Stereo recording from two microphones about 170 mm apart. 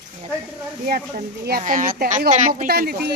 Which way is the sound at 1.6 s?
50° right (ahead or behind).